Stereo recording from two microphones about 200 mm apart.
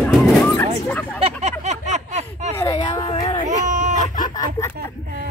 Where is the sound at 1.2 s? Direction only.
35° right (ahead or behind).